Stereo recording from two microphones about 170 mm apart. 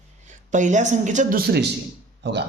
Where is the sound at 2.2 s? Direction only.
90° right.